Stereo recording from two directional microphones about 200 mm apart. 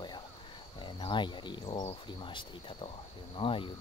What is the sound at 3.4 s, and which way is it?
Speech, 25° left (ahead or behind).